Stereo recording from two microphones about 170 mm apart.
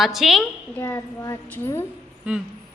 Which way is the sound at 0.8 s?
15° left (ahead or behind).